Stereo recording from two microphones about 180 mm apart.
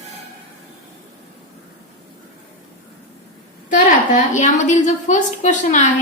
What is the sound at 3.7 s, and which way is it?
A woman's voice, 45° left (ahead or behind).